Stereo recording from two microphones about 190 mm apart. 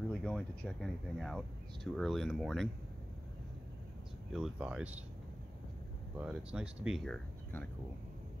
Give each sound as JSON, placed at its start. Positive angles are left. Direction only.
{"t": 0.1, "sound": "speech", "side_deg": 5}
{"t": 4.3, "sound": "speech", "side_deg": -5}
{"t": 6.1, "sound": "speech", "side_deg": -5}